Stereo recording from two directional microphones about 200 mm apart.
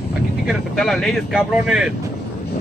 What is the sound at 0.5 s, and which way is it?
Speech, centre (ahead or behind).